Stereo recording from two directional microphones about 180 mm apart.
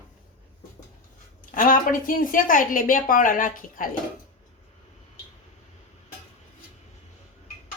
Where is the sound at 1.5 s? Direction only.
50° left (ahead or behind).